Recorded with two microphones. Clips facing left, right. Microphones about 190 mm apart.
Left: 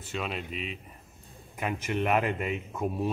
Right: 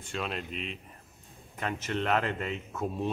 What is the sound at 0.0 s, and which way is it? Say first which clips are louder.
A man's voice: left 1 dB; 5° left (ahead or behind).